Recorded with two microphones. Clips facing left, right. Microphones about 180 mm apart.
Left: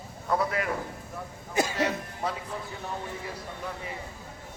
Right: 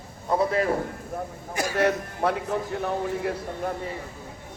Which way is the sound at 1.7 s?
60° right (ahead or behind).